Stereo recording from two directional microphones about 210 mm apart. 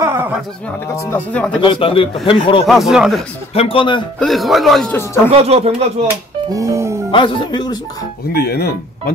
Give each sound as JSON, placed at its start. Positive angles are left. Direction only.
{"t": 0.0, "sound": "a sound", "side_deg": -10}
{"t": 0.9, "sound": "speech", "side_deg": 10}
{"t": 1.6, "sound": "speech", "side_deg": 25}
{"t": 2.6, "sound": "speech", "side_deg": 0}
{"t": 3.5, "sound": "speech", "side_deg": 25}
{"t": 4.2, "sound": "speech", "side_deg": 0}
{"t": 4.9, "sound": "speech", "side_deg": 10}
{"t": 5.3, "sound": "speech", "side_deg": -30}
{"t": 6.5, "sound": "music", "side_deg": -15}
{"t": 7.1, "sound": "speech", "side_deg": 25}
{"t": 8.3, "sound": "speech", "side_deg": 50}